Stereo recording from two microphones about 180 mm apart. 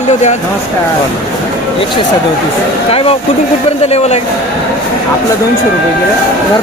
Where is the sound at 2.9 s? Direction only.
30° left (ahead or behind).